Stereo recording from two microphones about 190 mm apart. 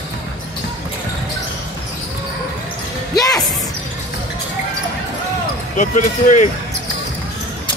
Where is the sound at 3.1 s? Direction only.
20° left (ahead or behind).